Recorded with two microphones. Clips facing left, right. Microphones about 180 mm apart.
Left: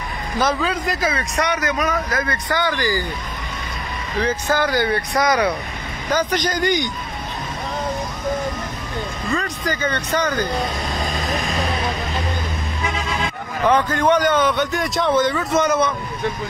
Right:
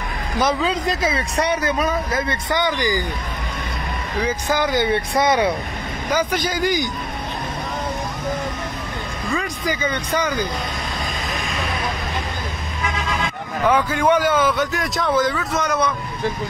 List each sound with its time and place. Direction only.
0.4 s a man's voice: 20° right (ahead or behind)
4.2 s a man's voice: 10° right (ahead or behind); by 5.5 s 25° right (ahead or behind)
6.0 s a man's voice: 10° right (ahead or behind)
9.3 s speech: 10° right (ahead or behind)
13.7 s speech: 5° right (ahead or behind)